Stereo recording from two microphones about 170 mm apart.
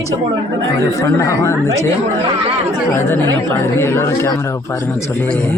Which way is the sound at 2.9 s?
10° left (ahead or behind).